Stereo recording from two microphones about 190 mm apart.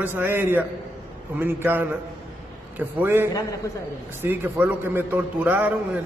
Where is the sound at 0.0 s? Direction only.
10° right (ahead or behind).